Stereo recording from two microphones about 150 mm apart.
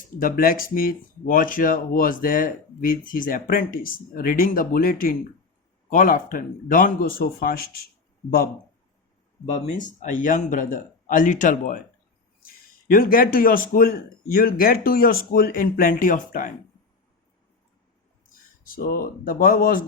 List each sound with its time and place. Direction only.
0.2 s speech: 70° left (ahead or behind)
10.0 s speech: 60° left (ahead or behind)
12.9 s speech: 75° left (ahead or behind)
18.6 s speech: 75° left (ahead or behind)